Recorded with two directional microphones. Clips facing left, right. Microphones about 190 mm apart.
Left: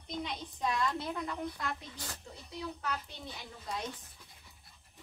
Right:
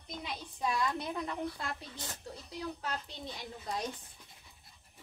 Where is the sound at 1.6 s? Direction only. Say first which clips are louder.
Left 1 dB; 30° right (ahead or behind).